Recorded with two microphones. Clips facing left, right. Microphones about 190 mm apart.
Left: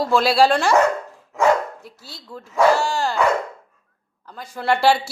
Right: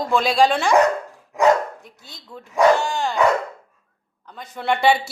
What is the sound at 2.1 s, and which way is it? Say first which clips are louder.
Speech: left 2 dB; centre (ahead or behind).